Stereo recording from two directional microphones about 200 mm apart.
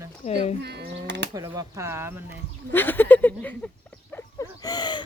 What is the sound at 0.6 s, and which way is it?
Speech, 55° right (ahead or behind).